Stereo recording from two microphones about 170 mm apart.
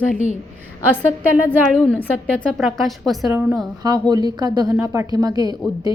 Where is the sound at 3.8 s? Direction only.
25° right (ahead or behind).